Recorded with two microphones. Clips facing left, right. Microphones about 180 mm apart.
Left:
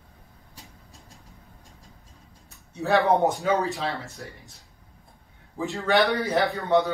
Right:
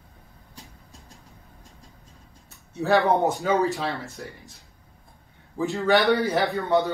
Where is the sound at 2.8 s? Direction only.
Centre (ahead or behind).